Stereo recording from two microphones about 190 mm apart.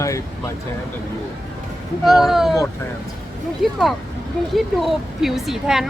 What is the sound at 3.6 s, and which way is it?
A woman's voice, centre (ahead or behind).